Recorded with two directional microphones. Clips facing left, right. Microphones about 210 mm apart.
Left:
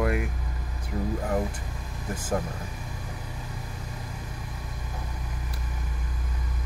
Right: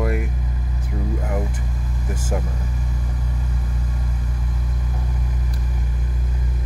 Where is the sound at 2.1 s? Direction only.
10° right (ahead or behind).